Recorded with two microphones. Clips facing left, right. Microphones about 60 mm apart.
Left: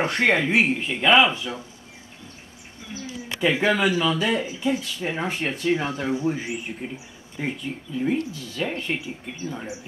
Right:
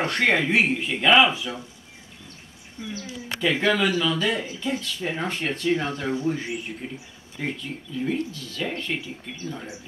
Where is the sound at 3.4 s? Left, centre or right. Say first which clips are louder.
Left 1 dB; centre.